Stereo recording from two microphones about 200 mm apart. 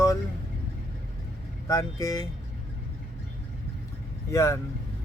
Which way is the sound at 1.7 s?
15° left (ahead or behind).